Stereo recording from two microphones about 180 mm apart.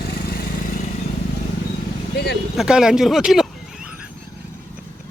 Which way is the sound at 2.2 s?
60° left (ahead or behind).